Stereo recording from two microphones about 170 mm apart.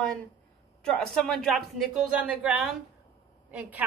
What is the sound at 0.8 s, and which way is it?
A woman's voice, 5° left (ahead or behind).